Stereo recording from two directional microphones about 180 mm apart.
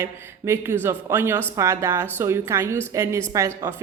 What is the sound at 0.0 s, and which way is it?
Speech, 15° right (ahead or behind).